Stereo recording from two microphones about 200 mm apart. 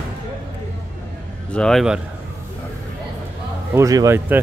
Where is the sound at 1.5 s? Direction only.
Centre (ahead or behind).